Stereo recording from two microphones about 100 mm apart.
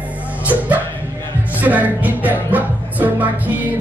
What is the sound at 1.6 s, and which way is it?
Music, 15° right (ahead or behind).